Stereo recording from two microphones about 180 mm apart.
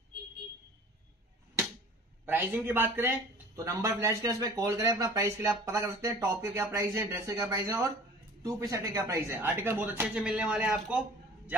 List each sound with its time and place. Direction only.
2.2 s a man's voice: 10° right (ahead or behind)